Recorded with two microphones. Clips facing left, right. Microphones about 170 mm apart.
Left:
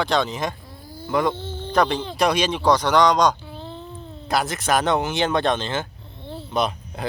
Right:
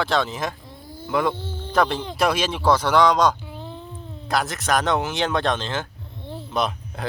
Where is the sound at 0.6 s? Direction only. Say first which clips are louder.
Even; 20° right (ahead or behind).